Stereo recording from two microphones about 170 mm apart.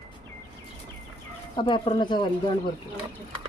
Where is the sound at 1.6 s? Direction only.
30° left (ahead or behind).